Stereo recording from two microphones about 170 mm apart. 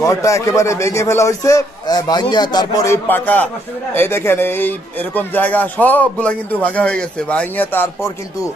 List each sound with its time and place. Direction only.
0.0 s a man's voice: 20° left (ahead or behind)